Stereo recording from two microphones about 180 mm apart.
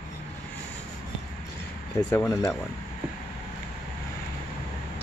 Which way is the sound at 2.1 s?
15° left (ahead or behind).